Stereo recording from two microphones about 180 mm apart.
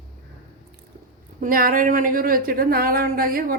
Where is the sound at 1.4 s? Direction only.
50° right (ahead or behind).